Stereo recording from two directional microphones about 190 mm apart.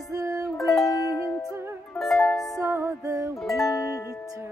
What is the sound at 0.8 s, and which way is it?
Music, 20° left (ahead or behind).